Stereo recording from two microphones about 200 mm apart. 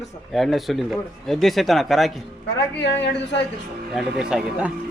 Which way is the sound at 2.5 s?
60° left (ahead or behind).